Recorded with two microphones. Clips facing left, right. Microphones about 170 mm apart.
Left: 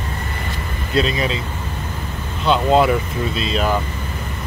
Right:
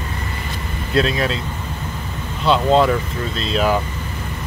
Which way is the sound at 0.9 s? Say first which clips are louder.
Right 1 dB; centre (ahead or behind).